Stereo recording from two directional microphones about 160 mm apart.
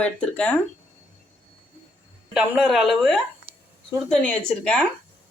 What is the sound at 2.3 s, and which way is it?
Speech, centre (ahead or behind).